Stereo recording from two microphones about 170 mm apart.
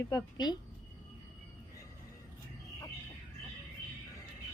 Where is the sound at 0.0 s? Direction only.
20° left (ahead or behind).